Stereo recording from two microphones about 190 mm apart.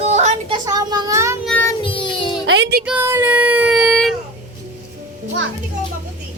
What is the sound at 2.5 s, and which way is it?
Music, 70° right (ahead or behind).